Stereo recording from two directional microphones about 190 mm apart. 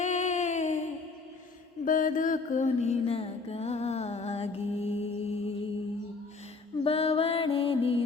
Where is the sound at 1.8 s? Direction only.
45° left (ahead or behind).